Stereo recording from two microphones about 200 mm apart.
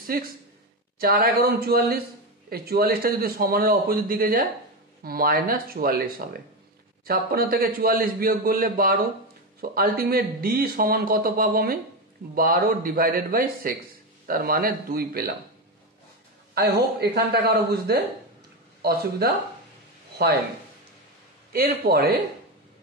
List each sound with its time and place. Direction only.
0.0 s speech: 45° right (ahead or behind)
16.5 s speech: 50° right (ahead or behind)
21.5 s speech: 50° right (ahead or behind)